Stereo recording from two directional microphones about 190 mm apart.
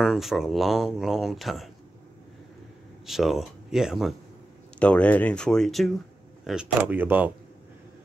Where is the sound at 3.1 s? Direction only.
Centre (ahead or behind).